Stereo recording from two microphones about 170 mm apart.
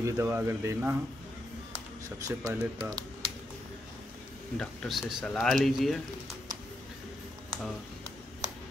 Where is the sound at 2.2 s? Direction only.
15° right (ahead or behind).